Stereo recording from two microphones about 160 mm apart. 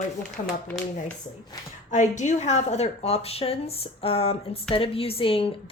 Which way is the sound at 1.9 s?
50° left (ahead or behind).